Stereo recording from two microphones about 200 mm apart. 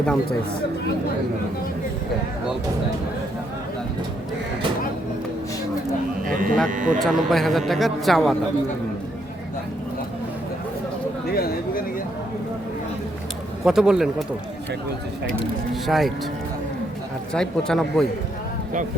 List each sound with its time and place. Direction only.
6.2 s speech: 45° right (ahead or behind)
7.0 s speech: centre (ahead or behind)
11.3 s speech: 50° left (ahead or behind)
13.7 s speech: 5° right (ahead or behind)
15.3 s speech: centre (ahead or behind)
17.3 s speech: 5° left (ahead or behind)